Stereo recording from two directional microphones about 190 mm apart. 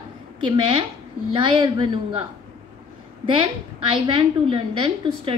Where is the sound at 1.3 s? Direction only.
25° right (ahead or behind).